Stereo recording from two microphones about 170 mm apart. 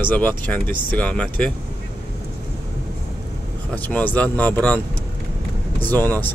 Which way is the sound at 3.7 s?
10° left (ahead or behind).